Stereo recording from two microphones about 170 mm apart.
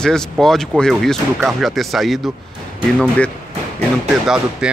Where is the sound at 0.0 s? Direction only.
5° left (ahead or behind).